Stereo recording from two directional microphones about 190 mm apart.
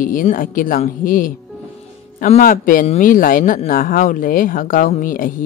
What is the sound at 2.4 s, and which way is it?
Speech, 45° left (ahead or behind).